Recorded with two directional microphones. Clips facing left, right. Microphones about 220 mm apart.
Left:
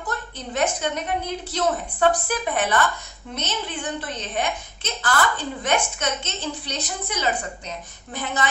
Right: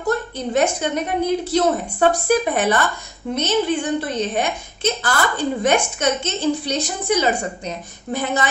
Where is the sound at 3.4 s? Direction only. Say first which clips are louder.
Right 11 dB; 10° right (ahead or behind).